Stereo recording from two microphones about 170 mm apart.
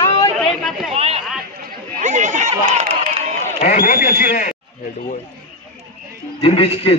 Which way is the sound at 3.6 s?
55° left (ahead or behind).